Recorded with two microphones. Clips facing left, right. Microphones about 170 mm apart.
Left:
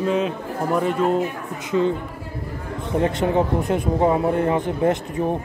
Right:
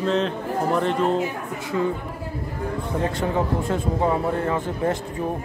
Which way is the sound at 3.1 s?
20° left (ahead or behind).